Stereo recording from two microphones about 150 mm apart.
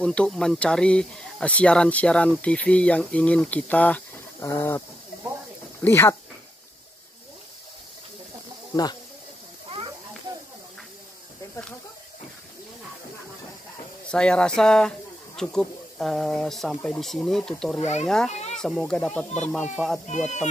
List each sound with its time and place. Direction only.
0.0 s speech: 5° left (ahead or behind)
14.1 s speech: 5° left (ahead or behind)
17.7 s speech: 50° left (ahead or behind)
18.0 s speech: 5° left (ahead or behind)
18.3 s a sound: 50° left (ahead or behind)
18.6 s speech: 5° left (ahead or behind)